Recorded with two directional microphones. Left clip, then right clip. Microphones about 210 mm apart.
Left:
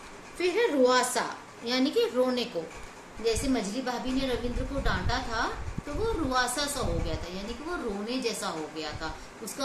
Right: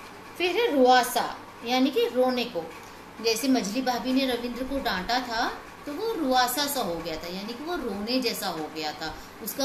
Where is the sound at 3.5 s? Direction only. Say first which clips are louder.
Right 5 dB; 15° left (ahead or behind).